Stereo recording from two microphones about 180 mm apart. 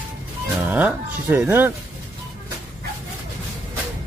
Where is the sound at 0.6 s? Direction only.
10° right (ahead or behind).